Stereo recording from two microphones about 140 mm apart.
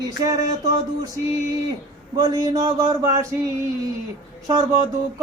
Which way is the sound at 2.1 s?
30° right (ahead or behind).